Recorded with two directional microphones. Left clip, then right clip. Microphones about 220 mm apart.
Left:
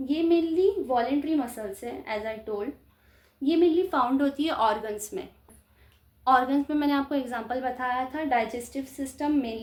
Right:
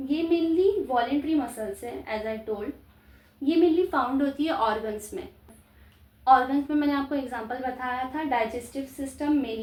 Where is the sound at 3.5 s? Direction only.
50° left (ahead or behind).